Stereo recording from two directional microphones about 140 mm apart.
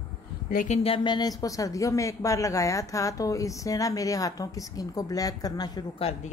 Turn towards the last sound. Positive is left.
turn(degrees=45)  # may be behind; listen again after turning